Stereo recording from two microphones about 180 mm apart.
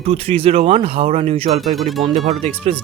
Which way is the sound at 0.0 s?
35° right (ahead or behind).